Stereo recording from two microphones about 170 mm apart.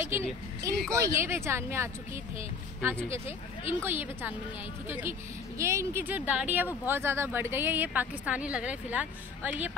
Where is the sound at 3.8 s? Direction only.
10° right (ahead or behind).